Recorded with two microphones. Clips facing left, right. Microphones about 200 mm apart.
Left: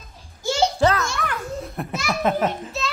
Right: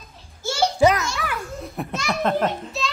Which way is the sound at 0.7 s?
10° right (ahead or behind).